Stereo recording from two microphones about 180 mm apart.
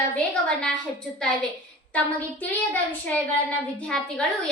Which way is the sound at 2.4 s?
10° left (ahead or behind).